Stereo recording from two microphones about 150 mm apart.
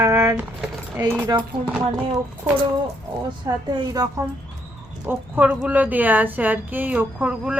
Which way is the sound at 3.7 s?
25° right (ahead or behind).